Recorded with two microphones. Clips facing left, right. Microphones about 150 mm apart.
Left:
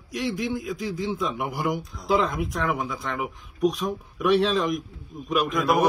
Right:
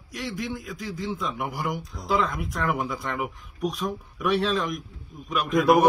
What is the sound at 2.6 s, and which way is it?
Speech, 5° right (ahead or behind).